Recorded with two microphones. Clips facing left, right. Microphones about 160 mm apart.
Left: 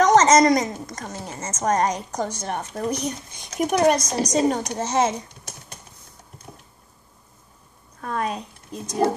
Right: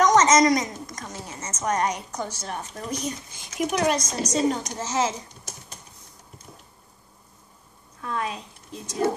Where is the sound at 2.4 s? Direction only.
60° left (ahead or behind).